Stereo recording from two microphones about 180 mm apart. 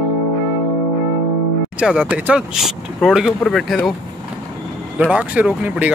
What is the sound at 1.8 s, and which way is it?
Speech, 5° right (ahead or behind).